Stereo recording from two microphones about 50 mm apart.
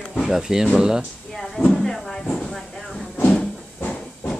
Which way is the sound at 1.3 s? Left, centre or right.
Centre.